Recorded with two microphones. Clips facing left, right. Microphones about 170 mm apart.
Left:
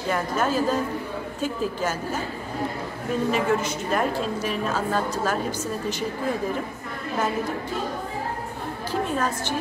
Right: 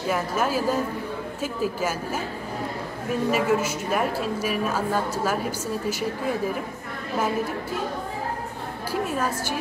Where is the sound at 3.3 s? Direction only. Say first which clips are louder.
Right 2 dB; 5° right (ahead or behind).